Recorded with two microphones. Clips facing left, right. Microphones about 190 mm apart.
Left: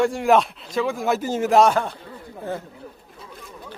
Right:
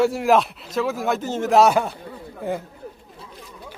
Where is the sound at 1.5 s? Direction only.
5° right (ahead or behind).